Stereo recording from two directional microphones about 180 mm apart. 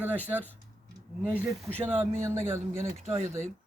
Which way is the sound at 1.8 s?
15° right (ahead or behind).